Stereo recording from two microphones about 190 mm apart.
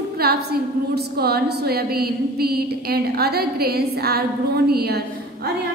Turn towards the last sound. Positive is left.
turn(degrees=-55)  # may be behind; listen again after turning